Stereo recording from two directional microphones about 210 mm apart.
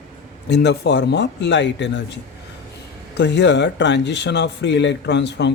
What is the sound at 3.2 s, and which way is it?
Speech, 55° left (ahead or behind).